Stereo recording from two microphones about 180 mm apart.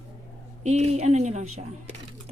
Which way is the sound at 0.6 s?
35° right (ahead or behind).